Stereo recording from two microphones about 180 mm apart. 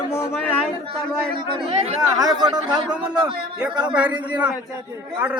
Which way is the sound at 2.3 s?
25° right (ahead or behind).